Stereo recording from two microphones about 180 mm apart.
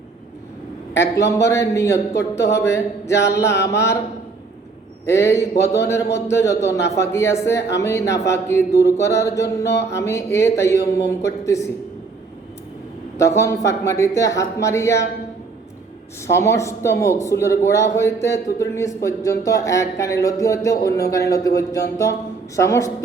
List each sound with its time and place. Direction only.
0.9 s speech: 15° left (ahead or behind)
3.5 s mantra: 70° left (ahead or behind)
5.0 s speech: 15° left (ahead or behind)
13.1 s speech: 15° left (ahead or behind)
16.2 s speech: 15° left (ahead or behind)